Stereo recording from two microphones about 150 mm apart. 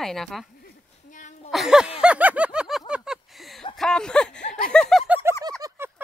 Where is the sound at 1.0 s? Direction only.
55° left (ahead or behind).